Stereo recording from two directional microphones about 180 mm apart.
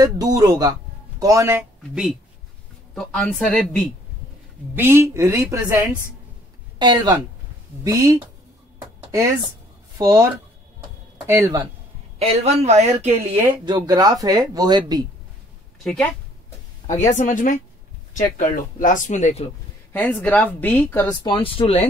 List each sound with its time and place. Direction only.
0.0 s a woman's voice: 20° right (ahead or behind)
1.8 s speech: centre (ahead or behind)
4.7 s a woman's voice: 15° right (ahead or behind)
9.9 s speech: 15° right (ahead or behind)
11.2 s a woman's voice: 15° right (ahead or behind)
12.2 s speech: 35° right (ahead or behind)
13.7 s speech: 20° right (ahead or behind)
17.1 s speech: 45° left (ahead or behind)
19.9 s a woman's voice: 10° left (ahead or behind)
21.2 s speech: 30° left (ahead or behind)